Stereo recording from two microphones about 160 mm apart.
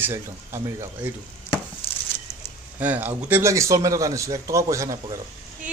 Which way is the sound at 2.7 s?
10° right (ahead or behind).